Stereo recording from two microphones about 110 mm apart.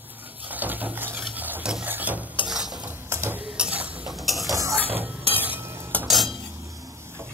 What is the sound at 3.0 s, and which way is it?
Mechanisms, 20° right (ahead or behind).